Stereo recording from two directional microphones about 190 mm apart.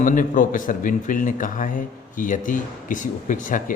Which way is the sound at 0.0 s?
45° left (ahead or behind).